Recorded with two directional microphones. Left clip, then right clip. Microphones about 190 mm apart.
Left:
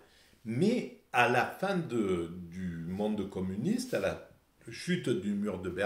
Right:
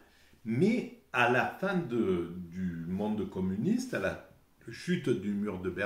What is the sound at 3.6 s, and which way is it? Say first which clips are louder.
Speech: left 1 dB; 35° left (ahead or behind).